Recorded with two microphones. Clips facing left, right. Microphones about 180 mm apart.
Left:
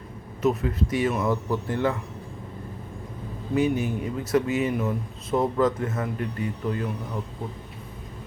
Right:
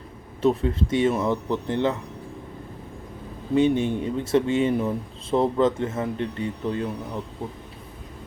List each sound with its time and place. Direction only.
0.4 s speech: 30° right (ahead or behind)
3.5 s speech: 30° right (ahead or behind)